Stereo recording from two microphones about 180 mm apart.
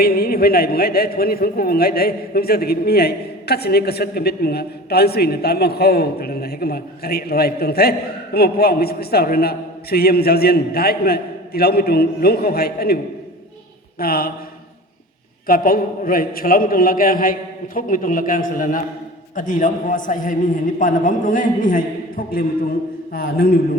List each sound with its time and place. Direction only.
0.0 s a man's voice: 55° left (ahead or behind)
14.0 s a man's voice: 55° left (ahead or behind)
15.4 s a man's voice: 55° left (ahead or behind)